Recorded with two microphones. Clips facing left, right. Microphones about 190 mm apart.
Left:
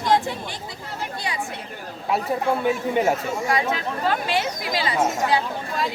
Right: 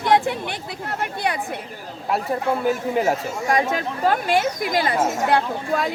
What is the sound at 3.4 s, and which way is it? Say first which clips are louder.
Speech: right 4 dB; 45° right (ahead or behind).